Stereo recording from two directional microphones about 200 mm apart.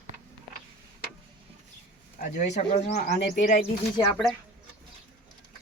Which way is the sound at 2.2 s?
35° left (ahead or behind).